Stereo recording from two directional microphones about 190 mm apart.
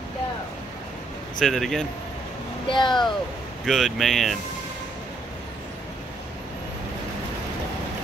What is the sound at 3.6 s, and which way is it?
Speech, centre (ahead or behind).